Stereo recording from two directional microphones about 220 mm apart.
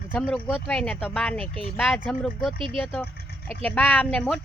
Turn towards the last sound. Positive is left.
turn(degrees=5)  # may be behind; listen again after turning